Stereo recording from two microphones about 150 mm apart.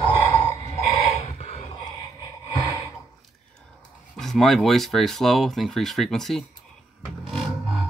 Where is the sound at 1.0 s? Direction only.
45° left (ahead or behind).